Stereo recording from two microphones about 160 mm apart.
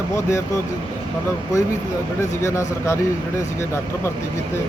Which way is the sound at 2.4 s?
20° left (ahead or behind).